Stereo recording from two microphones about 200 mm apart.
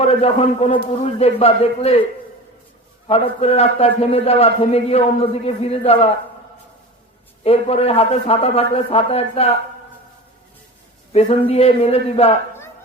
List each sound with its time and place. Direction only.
0.0 s a man's voice: 30° left (ahead or behind)
3.1 s a man's voice: 30° left (ahead or behind)
7.4 s a man's voice: 30° left (ahead or behind)
11.1 s a man's voice: 30° left (ahead or behind)